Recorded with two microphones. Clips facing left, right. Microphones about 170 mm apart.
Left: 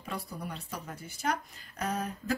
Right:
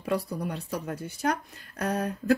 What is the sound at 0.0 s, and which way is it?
Speech, 70° right (ahead or behind).